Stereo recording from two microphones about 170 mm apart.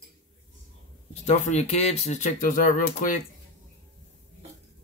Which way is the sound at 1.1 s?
40° left (ahead or behind).